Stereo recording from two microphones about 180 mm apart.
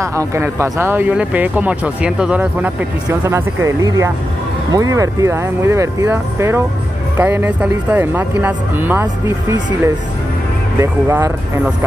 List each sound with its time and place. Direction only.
0.0 s speech: 15° right (ahead or behind)
10.8 s speech: 15° right (ahead or behind)